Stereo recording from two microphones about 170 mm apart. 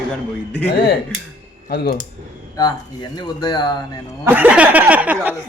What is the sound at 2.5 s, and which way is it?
Speech, 25° left (ahead or behind).